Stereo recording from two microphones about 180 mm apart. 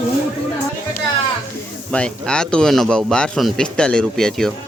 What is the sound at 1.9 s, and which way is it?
Speech, 5° left (ahead or behind).